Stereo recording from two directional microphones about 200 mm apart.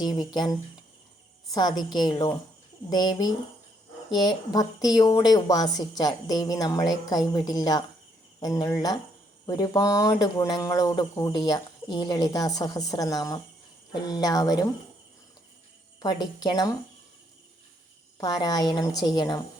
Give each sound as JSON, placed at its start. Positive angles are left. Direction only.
{"t": 0.0, "sound": "speech", "side_deg": 20}
{"t": 1.5, "sound": "speech", "side_deg": 20}
{"t": 16.0, "sound": "speech", "side_deg": 20}
{"t": 18.2, "sound": "speech", "side_deg": 20}